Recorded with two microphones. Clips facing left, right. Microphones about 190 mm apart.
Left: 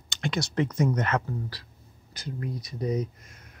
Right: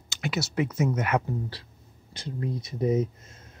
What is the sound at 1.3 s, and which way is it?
Speech, 25° right (ahead or behind).